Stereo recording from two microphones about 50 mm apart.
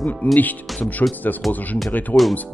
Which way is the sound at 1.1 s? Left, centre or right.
Left.